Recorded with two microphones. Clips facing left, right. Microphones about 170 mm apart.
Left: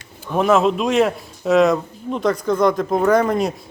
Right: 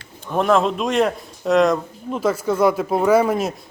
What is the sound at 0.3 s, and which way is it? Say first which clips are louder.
Speech: left 2 dB; centre (ahead or behind).